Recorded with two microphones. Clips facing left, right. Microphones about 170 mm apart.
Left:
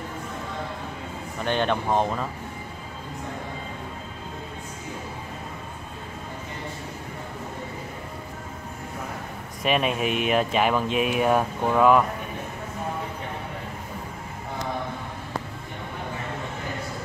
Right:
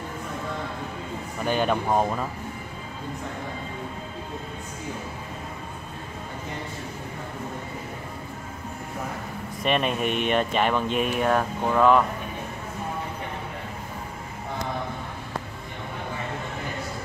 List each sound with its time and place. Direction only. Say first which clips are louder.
1.4 s speech: even; 5° right (ahead or behind)
9.6 s speech: left 1 dB; 5° left (ahead or behind)